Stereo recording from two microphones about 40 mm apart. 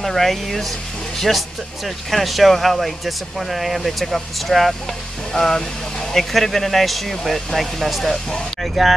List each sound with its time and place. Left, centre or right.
0.0 s speech: centre
8.1 s speech: centre
8.8 s speech: centre